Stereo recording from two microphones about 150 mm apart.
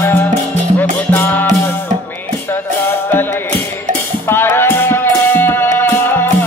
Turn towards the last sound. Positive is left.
turn(degrees=15)  # may be behind; listen again after turning